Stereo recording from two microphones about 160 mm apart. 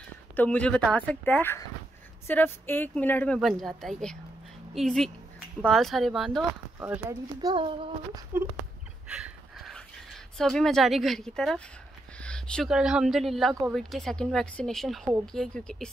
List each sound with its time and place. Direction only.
0.4 s speech: 5° left (ahead or behind)
6.8 s speech: 15° right (ahead or behind)
9.0 s a sound: 5° right (ahead or behind)
12.2 s speech: 5° left (ahead or behind)